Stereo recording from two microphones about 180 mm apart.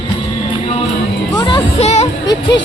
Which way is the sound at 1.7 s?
35° left (ahead or behind).